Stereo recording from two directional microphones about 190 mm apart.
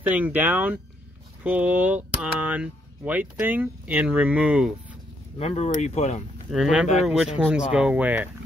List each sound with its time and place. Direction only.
0.0 s speech: 10° right (ahead or behind)
5.4 s speech: 35° left (ahead or behind)
6.5 s speech: 5° right (ahead or behind)